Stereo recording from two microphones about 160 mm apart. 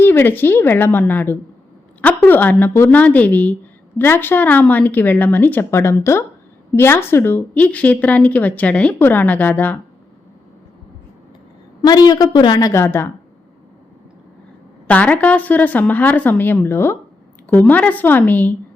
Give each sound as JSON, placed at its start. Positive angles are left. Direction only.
{"t": 0.0, "sound": "a woman's voice", "side_deg": 15}
{"t": 11.8, "sound": "a woman's voice", "side_deg": 25}
{"t": 14.8, "sound": "a woman's voice", "side_deg": 10}